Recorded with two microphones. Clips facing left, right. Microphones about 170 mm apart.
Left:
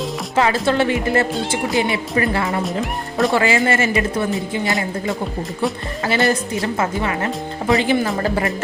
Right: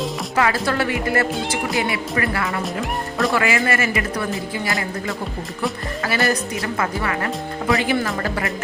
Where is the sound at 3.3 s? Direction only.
25° left (ahead or behind).